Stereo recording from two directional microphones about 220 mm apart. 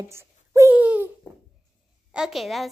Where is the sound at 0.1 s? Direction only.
15° right (ahead or behind).